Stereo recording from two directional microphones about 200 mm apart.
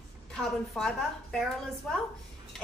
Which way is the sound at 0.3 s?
Centre (ahead or behind).